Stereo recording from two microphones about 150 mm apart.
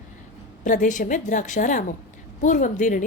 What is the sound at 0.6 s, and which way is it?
A woman's voice, 60° left (ahead or behind).